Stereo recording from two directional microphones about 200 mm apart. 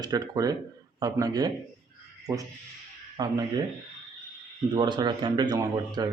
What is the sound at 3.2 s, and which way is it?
Speech, 15° right (ahead or behind).